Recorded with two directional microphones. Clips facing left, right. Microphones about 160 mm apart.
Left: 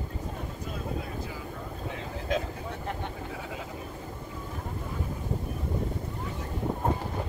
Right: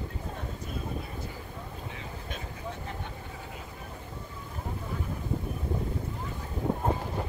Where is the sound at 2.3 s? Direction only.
90° left.